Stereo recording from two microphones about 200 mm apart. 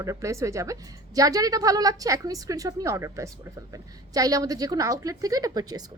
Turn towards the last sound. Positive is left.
turn(degrees=-20)  # may be behind; listen again after turning